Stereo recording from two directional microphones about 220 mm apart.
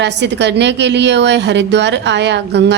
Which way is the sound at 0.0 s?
50° right (ahead or behind).